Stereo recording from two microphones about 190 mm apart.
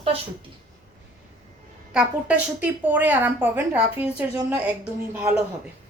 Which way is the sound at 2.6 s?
10° right (ahead or behind).